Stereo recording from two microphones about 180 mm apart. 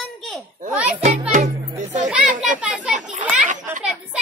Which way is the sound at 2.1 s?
5° right (ahead or behind).